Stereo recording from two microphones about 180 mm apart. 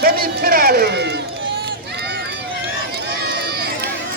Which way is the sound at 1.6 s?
65° right (ahead or behind).